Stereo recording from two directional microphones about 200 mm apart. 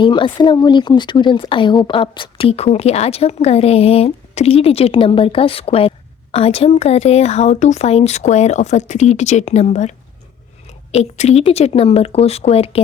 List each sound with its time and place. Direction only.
0.0 s speech: 25° left (ahead or behind)